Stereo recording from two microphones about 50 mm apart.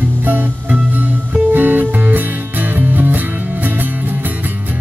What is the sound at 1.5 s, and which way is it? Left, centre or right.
Music, right.